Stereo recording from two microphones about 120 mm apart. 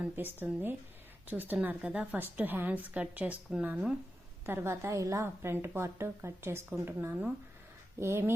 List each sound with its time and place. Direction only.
0.0 s a woman's voice: 15° right (ahead or behind)